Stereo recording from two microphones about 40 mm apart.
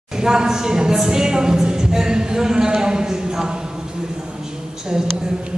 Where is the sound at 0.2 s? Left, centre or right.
Centre.